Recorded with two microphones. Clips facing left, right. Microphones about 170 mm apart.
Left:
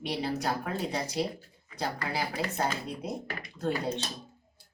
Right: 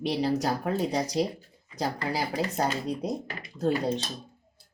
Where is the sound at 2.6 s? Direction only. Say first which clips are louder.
Right 4 dB; 40° right (ahead or behind).